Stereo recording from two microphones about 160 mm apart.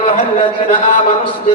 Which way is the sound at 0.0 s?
35° left (ahead or behind).